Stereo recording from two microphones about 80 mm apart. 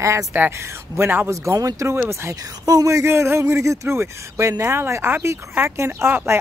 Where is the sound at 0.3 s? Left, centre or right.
Right.